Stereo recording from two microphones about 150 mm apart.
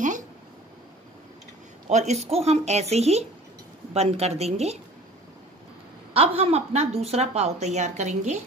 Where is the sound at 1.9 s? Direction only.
50° right (ahead or behind).